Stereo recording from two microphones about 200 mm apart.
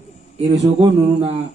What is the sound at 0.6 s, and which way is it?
Speech, 25° right (ahead or behind).